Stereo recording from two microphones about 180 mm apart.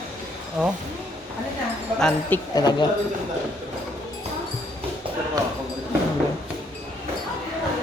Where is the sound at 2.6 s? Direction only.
20° left (ahead or behind).